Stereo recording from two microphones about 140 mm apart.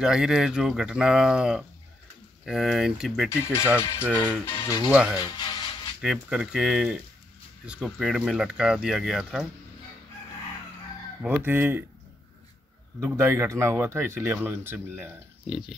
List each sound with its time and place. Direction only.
0.0 s speech: 5° right (ahead or behind)
3.3 s speech: 20° left (ahead or behind)
4.8 s speech: 10° right (ahead or behind)
5.2 s music: 35° left (ahead or behind)
5.9 s speech: 5° right (ahead or behind)
11.2 s speech: 15° right (ahead or behind)
13.0 s speech: 20° right (ahead or behind)